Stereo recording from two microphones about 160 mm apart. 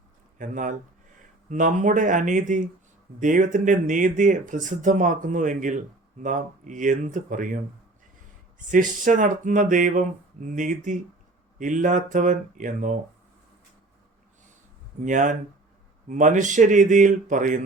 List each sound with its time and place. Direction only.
0.3 s speech: 55° right (ahead or behind)
8.7 s speech: 55° right (ahead or behind)
15.0 s speech: 50° right (ahead or behind)